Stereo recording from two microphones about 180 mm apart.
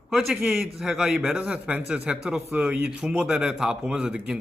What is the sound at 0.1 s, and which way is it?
A man's voice, centre (ahead or behind).